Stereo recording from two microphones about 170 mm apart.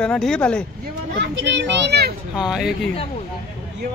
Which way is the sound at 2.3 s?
5° right (ahead or behind).